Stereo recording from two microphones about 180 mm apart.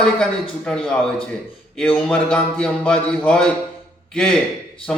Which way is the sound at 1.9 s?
5° left (ahead or behind).